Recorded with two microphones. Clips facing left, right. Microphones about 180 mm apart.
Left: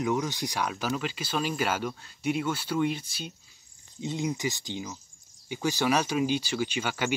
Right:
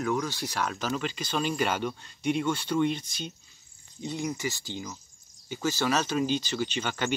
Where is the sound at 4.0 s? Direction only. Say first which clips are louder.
Left 2 dB; 20° left (ahead or behind).